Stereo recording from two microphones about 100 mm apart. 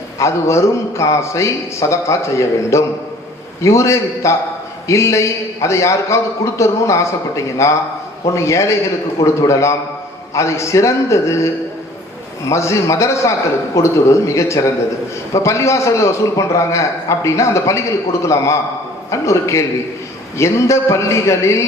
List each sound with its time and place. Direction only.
0.2 s a man's voice: 30° left (ahead or behind)